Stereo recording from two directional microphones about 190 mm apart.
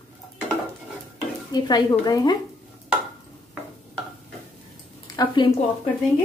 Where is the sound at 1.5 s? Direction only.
20° left (ahead or behind).